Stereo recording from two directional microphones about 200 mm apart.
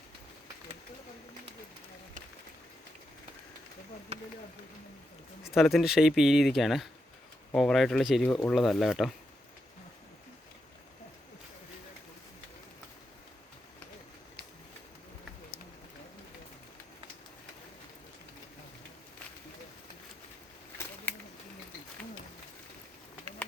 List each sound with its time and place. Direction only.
4.1 s speech: 30° right (ahead or behind)
5.5 s speech: centre (ahead or behind)